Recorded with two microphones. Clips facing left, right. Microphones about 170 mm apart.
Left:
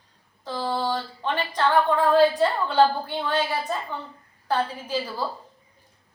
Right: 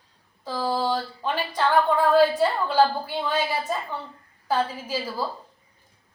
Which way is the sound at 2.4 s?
10° right (ahead or behind).